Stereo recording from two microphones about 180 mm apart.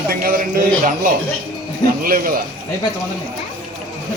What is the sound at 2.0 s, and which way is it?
Speech, 50° right (ahead or behind).